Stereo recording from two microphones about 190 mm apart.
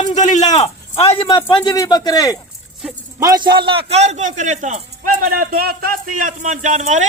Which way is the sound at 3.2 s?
20° right (ahead or behind).